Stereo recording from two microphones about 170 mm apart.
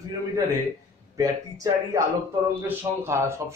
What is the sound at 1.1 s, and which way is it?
A man's voice, 20° right (ahead or behind).